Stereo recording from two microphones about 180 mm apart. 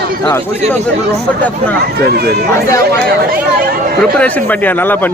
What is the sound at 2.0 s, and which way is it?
Speech, 60° right (ahead or behind).